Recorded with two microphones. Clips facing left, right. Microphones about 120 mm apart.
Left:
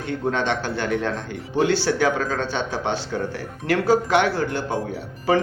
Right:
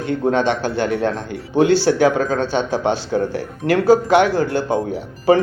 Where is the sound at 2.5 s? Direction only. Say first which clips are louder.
Right 6 dB; 10° right (ahead or behind).